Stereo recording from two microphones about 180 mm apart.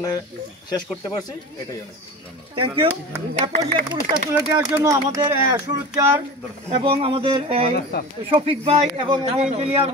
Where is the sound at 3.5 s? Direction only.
40° right (ahead or behind).